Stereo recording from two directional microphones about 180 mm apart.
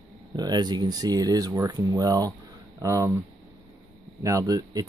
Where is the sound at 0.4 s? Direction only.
25° right (ahead or behind).